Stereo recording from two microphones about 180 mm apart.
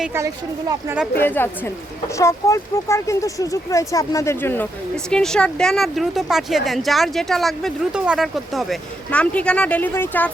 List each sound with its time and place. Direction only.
0.0 s speech: 15° right (ahead or behind)
1.2 s a woman's voice: 10° left (ahead or behind)